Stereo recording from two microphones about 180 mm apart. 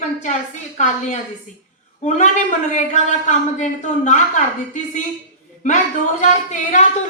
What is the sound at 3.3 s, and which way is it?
Speech, 40° left (ahead or behind).